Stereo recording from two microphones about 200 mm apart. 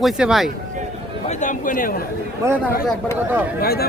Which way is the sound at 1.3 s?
40° left (ahead or behind).